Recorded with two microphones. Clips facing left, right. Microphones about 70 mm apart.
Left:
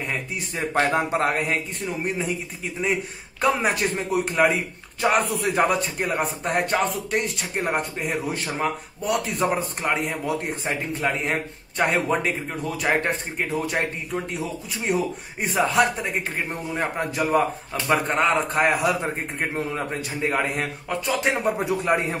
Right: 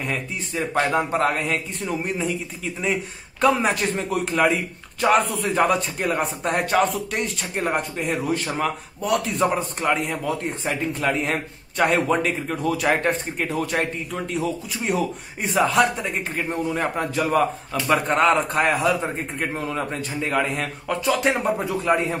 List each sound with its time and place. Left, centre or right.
0.1 s speech: left
0.9 s a man's voice: centre
11.0 s a man's voice: centre
14.9 s a man's voice: centre
19.7 s speech: left
21.0 s a man's voice: centre
21.5 s a man's voice: centre